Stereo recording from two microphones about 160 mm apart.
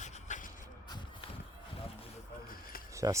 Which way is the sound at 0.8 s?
25° left (ahead or behind).